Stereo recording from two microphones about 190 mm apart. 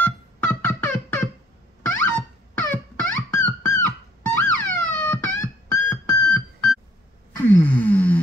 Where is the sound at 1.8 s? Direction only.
5° left (ahead or behind).